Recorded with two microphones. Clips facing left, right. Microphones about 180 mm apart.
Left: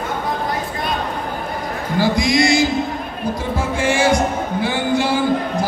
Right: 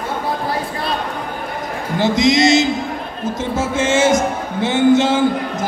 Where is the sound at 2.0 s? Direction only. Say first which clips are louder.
Right 3 dB; 20° right (ahead or behind).